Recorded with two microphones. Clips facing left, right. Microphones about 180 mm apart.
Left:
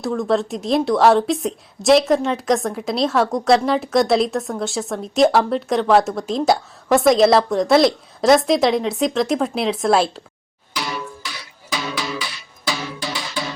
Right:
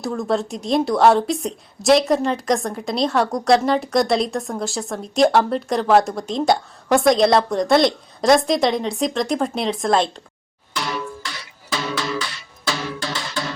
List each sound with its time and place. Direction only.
0.0 s speech: centre (ahead or behind)
11.7 s music: centre (ahead or behind)